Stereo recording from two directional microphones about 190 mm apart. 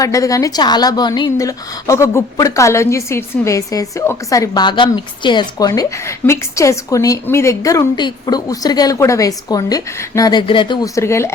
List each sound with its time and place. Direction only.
0.0 s a woman's voice: 15° left (ahead or behind)